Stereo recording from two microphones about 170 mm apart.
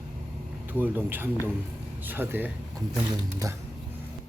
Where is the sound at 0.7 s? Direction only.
10° right (ahead or behind).